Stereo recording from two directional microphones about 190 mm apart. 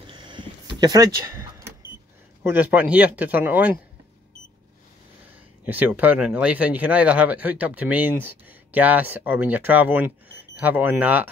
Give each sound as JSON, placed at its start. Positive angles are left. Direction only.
{"t": 0.0, "sound": "a sound", "side_deg": -25}
{"t": 2.4, "sound": "speech", "side_deg": -10}
{"t": 5.7, "sound": "speech", "side_deg": -10}